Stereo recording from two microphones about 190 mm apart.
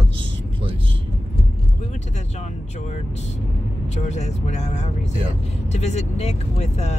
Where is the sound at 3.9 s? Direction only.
35° left (ahead or behind).